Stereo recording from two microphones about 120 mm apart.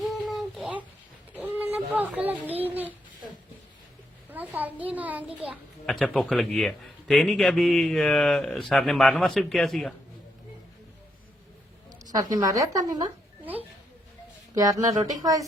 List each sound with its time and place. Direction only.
0.0 s child singing: centre (ahead or behind)
1.3 s a child's voice: 15° right (ahead or behind)
4.3 s a child's voice: 15° right (ahead or behind)
5.8 s a man's voice: 5° left (ahead or behind)
11.9 s a woman's voice: 30° right (ahead or behind)
14.5 s speech: 30° right (ahead or behind)